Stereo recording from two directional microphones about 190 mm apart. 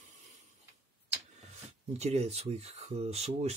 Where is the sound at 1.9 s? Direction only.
35° right (ahead or behind).